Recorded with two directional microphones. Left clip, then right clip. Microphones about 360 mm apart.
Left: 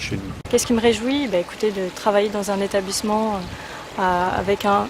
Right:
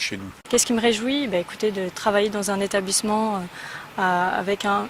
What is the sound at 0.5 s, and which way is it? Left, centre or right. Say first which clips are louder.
Speech: left 2 dB; right.